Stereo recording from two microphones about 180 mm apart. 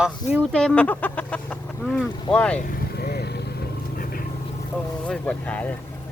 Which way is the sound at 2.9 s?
65° left (ahead or behind).